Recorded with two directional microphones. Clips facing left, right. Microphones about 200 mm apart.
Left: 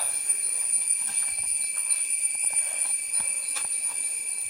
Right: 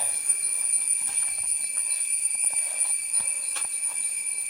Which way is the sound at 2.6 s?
Centre (ahead or behind).